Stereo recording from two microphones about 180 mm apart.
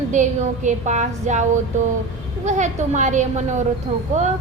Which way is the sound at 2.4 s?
40° right (ahead or behind).